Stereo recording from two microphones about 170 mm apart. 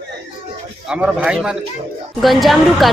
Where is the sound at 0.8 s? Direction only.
5° right (ahead or behind).